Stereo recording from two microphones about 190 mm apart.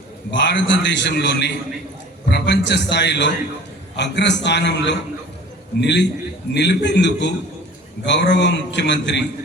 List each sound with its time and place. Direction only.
0.3 s a man's voice: 70° left (ahead or behind)